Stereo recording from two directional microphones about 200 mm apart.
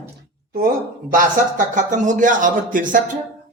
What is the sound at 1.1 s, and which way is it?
Speech, 40° right (ahead or behind).